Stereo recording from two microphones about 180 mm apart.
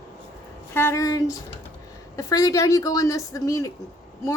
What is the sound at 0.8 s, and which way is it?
A woman's voice, 15° left (ahead or behind).